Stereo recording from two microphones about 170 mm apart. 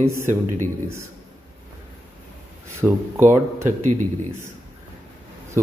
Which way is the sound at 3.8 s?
45° right (ahead or behind).